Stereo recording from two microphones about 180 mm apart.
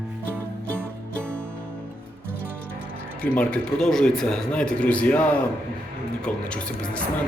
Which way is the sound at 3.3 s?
5° left (ahead or behind).